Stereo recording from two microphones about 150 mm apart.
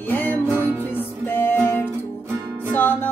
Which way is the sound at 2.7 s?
15° left (ahead or behind).